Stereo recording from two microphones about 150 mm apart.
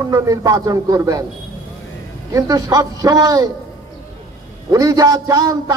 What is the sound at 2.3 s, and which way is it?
Speech, 25° right (ahead or behind).